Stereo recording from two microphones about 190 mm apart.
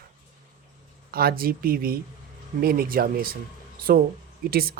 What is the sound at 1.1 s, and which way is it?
Speech, 50° right (ahead or behind).